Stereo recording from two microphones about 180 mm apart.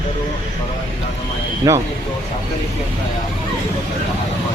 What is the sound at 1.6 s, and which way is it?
Speech, 20° right (ahead or behind).